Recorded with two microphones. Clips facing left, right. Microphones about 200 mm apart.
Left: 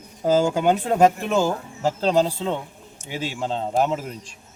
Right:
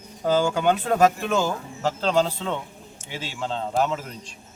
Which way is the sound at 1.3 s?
15° left (ahead or behind).